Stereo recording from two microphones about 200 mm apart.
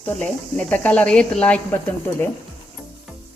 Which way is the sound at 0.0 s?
5° left (ahead or behind).